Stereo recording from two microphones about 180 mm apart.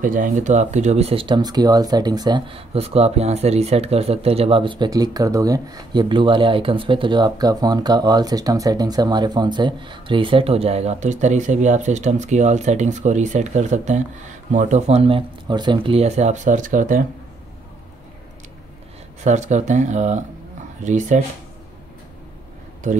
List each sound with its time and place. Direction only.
0.0 s speech: 50° right (ahead or behind)
19.2 s speech: 40° right (ahead or behind)